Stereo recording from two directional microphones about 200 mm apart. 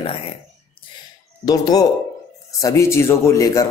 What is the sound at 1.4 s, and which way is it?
A man's voice, 20° left (ahead or behind).